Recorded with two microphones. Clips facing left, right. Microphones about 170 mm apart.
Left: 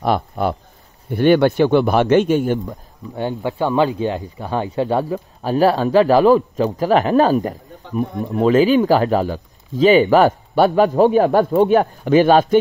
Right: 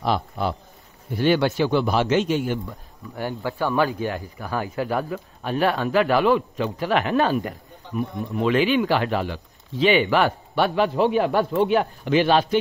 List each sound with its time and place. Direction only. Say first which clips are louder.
0.0 s a man's voice: left 5 dB; 55° left (ahead or behind)
3.2 s speech: left 5 dB; 25° left (ahead or behind); by 12.5 s 45° left (ahead or behind)